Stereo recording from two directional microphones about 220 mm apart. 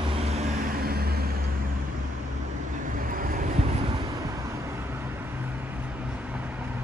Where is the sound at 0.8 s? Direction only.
45° right (ahead or behind).